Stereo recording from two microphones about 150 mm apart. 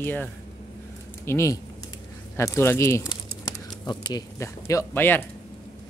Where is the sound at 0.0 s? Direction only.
10° left (ahead or behind).